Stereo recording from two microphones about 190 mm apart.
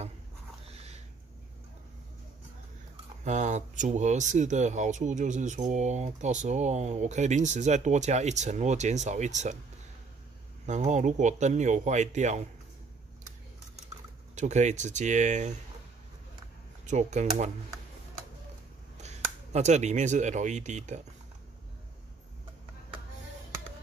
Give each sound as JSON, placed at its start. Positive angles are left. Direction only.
{"t": 0.7, "sound": "a sound", "side_deg": -35}
{"t": 3.3, "sound": "speech", "side_deg": -40}
{"t": 10.7, "sound": "speech", "side_deg": -40}
{"t": 14.3, "sound": "speech", "side_deg": -40}
{"t": 16.8, "sound": "speech", "side_deg": -40}
{"t": 18.9, "sound": "speech", "side_deg": -35}